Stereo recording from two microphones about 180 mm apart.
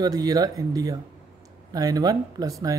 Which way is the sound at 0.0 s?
20° right (ahead or behind).